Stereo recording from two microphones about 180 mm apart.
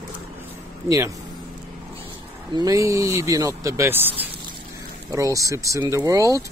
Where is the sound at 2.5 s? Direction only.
20° right (ahead or behind).